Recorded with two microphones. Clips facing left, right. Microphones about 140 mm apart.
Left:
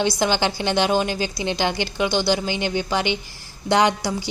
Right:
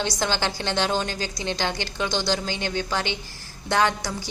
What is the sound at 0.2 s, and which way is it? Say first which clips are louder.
A woman's voice: left 5 dB; 15° left (ahead or behind).